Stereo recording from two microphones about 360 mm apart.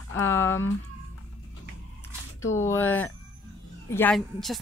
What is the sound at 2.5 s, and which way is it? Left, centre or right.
Speech, centre.